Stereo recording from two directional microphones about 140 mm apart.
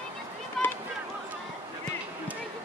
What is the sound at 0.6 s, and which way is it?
Run, 5° left (ahead or behind).